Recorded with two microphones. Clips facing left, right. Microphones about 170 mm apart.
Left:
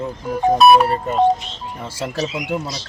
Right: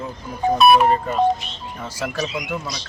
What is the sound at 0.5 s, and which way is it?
Speech, 40° left (ahead or behind).